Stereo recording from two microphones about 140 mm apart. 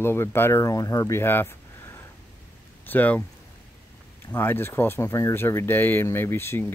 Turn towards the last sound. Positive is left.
turn(degrees=15)  # may be behind; listen again after turning